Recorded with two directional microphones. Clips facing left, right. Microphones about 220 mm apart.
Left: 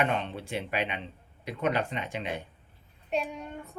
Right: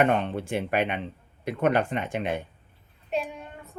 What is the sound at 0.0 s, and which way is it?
Speech, 50° right (ahead or behind).